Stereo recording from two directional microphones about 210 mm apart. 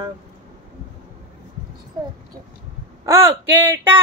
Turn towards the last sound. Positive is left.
turn(degrees=-10)  # may be behind; listen again after turning